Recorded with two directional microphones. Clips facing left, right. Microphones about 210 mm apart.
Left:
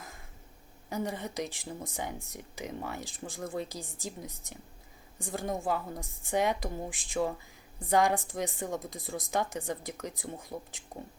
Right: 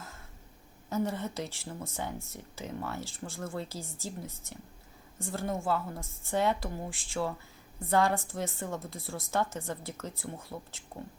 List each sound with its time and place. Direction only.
0.9 s speech: 15° left (ahead or behind)